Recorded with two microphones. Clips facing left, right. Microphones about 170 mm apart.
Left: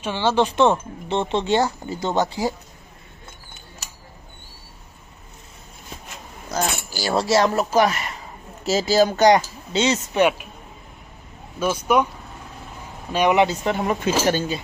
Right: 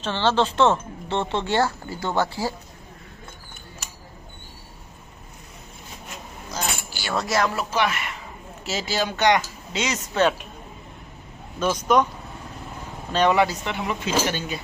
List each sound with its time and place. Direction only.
0.0 s speech: 10° left (ahead or behind)
6.5 s speech: 40° left (ahead or behind)
7.5 s speech: 40° left (ahead or behind)
11.6 s speech: 10° left (ahead or behind)
13.1 s speech: 15° left (ahead or behind)
13.7 s speech: 45° left (ahead or behind)